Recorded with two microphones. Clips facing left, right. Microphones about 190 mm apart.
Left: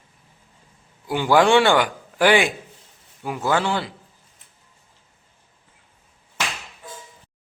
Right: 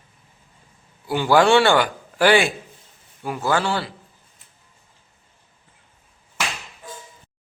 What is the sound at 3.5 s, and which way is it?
Speech, 20° left (ahead or behind).